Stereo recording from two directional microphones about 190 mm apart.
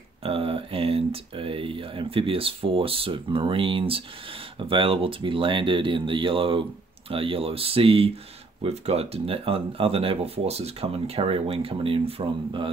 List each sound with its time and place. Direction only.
0.2 s speech: 30° right (ahead or behind)